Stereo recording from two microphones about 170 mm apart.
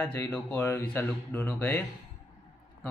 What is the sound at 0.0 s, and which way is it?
Speech, 15° left (ahead or behind).